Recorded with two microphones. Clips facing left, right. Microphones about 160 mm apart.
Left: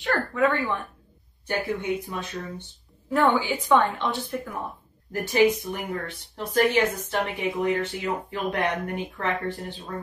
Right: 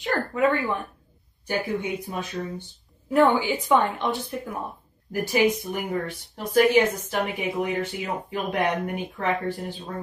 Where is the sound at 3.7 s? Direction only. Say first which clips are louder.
Left 1 dB; 15° right (ahead or behind).